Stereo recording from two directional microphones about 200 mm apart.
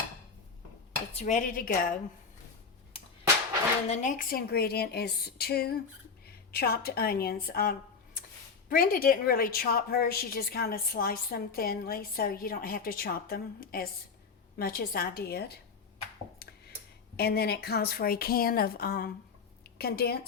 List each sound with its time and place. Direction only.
1.2 s speech: 40° left (ahead or behind)
3.8 s a woman's voice: 40° left (ahead or behind)
17.2 s a woman's voice: 55° left (ahead or behind)